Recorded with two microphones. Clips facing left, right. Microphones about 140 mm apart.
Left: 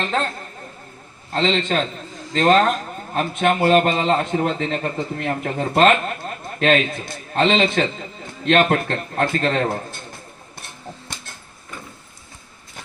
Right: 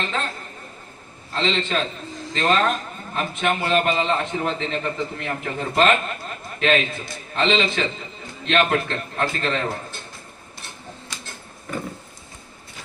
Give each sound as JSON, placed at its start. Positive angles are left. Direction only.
{"t": 1.3, "sound": "a man's voice", "side_deg": 55}